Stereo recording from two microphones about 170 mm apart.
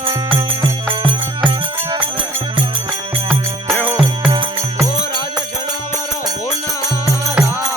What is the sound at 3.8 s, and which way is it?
Music, 10° right (ahead or behind).